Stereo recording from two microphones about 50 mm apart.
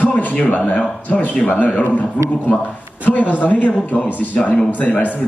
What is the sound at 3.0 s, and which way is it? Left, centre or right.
A man's voice, left.